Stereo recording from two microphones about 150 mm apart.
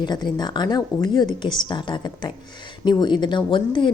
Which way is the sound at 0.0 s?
30° left (ahead or behind).